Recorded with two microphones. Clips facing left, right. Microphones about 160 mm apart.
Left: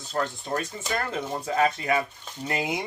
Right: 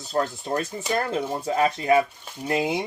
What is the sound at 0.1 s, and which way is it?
Speech, 35° right (ahead or behind).